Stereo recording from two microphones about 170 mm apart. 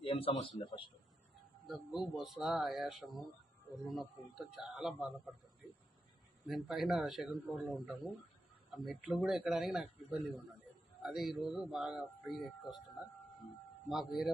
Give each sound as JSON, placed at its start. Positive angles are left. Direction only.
{"t": 0.0, "sound": "speech", "side_deg": 30}
{"t": 1.6, "sound": "speech", "side_deg": 0}
{"t": 6.5, "sound": "speech", "side_deg": 0}
{"t": 13.8, "sound": "speech", "side_deg": 0}